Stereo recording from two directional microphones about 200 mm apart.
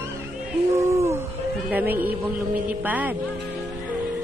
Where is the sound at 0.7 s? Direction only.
15° right (ahead or behind).